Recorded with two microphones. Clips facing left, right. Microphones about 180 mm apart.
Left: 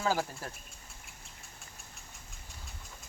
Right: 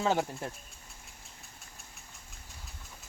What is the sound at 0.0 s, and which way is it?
Speech, 25° right (ahead or behind).